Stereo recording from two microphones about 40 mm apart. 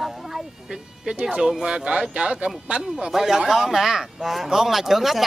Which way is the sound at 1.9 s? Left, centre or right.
Right.